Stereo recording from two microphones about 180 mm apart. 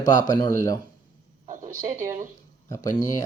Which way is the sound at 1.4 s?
45° right (ahead or behind).